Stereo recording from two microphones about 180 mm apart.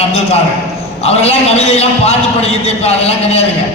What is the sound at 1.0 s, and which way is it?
A man's voice, 35° left (ahead or behind).